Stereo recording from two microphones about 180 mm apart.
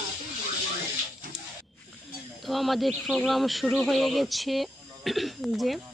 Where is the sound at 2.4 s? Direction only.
Centre (ahead or behind).